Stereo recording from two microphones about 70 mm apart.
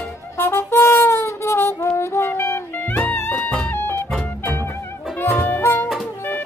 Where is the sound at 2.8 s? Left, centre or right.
Left.